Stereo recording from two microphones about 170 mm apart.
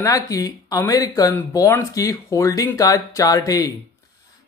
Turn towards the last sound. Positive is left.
turn(degrees=20)  # may be behind; listen again after turning